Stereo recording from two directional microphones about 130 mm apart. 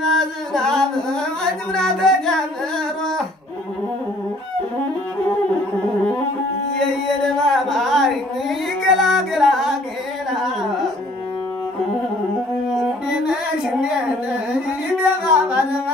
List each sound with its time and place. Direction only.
0.1 s music: 5° left (ahead or behind)
1.4 s singing: 5° left (ahead or behind)
7.4 s a sound: centre (ahead or behind)
13.3 s child singing: 5° right (ahead or behind)
15.2 s music: 10° right (ahead or behind)